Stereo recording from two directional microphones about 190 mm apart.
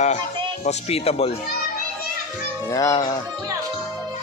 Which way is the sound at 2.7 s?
20° left (ahead or behind).